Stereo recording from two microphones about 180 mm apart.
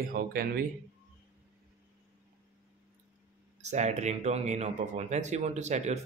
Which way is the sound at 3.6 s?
40° right (ahead or behind).